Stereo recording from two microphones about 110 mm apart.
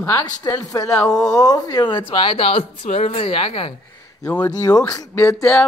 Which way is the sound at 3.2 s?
60° left (ahead or behind).